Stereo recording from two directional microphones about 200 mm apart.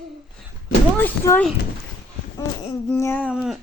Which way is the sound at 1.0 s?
10° left (ahead or behind).